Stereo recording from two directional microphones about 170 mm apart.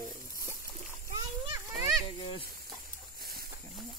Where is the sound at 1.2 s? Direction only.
25° right (ahead or behind).